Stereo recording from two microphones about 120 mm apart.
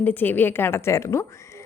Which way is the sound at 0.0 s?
15° left (ahead or behind).